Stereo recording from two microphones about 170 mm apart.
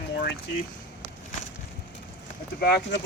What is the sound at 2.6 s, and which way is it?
Speech, 65° left (ahead or behind).